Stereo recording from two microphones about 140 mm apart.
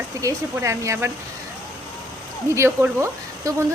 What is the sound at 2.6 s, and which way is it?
Speech, 15° right (ahead or behind).